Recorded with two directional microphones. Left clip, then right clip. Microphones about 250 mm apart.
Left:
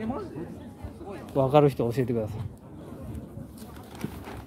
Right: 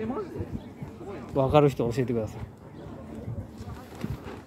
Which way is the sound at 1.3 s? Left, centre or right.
Centre.